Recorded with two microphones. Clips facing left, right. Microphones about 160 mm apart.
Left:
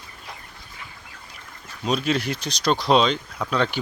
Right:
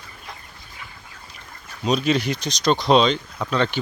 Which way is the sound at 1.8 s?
5° left (ahead or behind).